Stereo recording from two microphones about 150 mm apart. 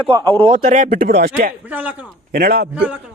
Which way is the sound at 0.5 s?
60° right (ahead or behind).